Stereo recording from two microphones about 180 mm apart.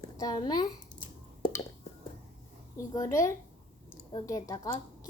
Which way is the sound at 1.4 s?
30° left (ahead or behind).